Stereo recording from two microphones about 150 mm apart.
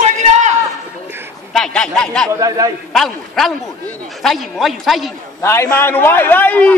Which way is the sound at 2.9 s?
Centre (ahead or behind).